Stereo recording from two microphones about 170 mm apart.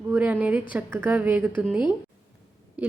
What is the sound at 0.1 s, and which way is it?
A woman's voice, 10° right (ahead or behind).